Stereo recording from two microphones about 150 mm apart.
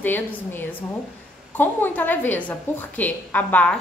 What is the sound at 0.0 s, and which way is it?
A woman's voice, 15° left (ahead or behind).